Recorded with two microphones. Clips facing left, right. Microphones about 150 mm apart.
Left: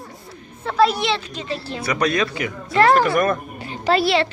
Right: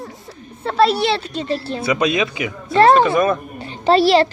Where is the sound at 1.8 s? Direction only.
25° right (ahead or behind).